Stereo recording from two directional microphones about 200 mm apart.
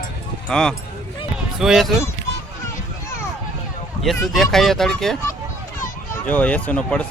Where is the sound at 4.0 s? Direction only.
Centre (ahead or behind).